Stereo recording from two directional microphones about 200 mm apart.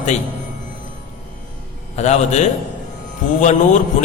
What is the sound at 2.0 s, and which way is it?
Speech, 35° left (ahead or behind).